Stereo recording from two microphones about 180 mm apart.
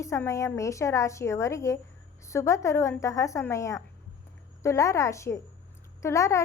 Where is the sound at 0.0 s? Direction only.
15° left (ahead or behind).